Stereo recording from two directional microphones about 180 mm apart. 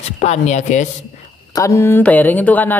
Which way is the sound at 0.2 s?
40° left (ahead or behind).